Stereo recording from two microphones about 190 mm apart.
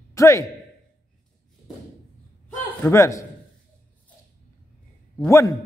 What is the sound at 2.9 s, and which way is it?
Speech, 15° left (ahead or behind).